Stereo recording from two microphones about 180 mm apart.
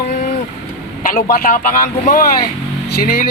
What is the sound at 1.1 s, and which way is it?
Speech, 55° left (ahead or behind).